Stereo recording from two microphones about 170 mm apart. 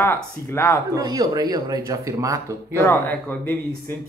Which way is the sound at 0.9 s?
20° right (ahead or behind).